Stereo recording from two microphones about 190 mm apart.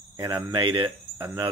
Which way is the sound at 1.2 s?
15° right (ahead or behind).